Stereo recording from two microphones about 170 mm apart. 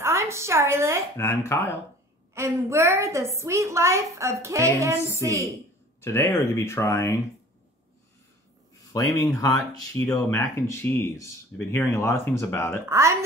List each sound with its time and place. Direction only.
0.0 s a woman's voice: 15° right (ahead or behind)
1.1 s speech: 15° left (ahead or behind)
2.3 s a woman's voice: 15° right (ahead or behind)
4.9 s speech: 15° left (ahead or behind)
5.2 s a woman's voice: 15° right (ahead or behind)
5.9 s speech: 15° left (ahead or behind)
8.9 s speech: 20° left (ahead or behind)
12.8 s a woman's voice: 15° right (ahead or behind)